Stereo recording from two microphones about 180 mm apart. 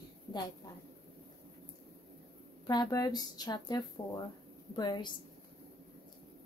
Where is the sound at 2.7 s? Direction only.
20° left (ahead or behind).